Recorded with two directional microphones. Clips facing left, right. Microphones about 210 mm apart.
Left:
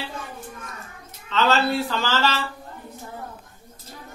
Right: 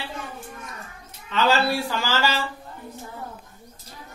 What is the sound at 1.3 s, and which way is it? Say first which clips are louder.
Speech: left 1 dB; 10° right (ahead or behind).